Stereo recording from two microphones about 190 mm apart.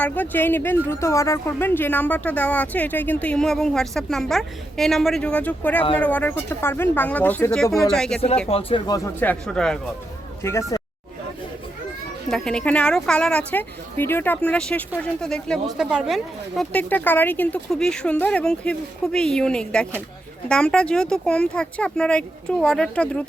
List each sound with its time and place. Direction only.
0.0 s speech: 10° left (ahead or behind)
8.4 s speech: 30° left (ahead or behind)
9.2 s speech: 5° left (ahead or behind)
10.4 s speech: 15° left (ahead or behind)
12.3 s speech: 5° left (ahead or behind)